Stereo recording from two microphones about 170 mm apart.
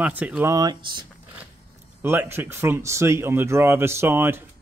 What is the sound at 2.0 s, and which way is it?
Speech, 15° right (ahead or behind).